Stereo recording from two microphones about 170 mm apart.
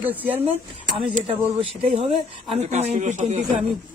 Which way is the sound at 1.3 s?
35° right (ahead or behind).